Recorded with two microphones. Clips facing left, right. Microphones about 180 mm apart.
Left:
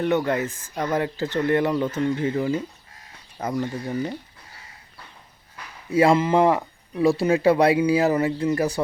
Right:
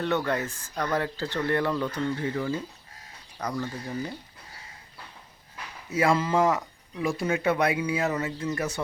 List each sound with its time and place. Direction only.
0.0 s speech: 15° left (ahead or behind)
5.9 s speech: 30° left (ahead or behind)